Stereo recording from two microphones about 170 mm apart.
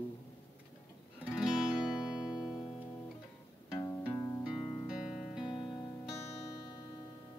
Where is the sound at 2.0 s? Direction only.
25° left (ahead or behind).